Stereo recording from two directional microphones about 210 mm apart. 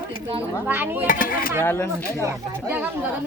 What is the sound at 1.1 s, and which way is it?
Speech, 40° left (ahead or behind).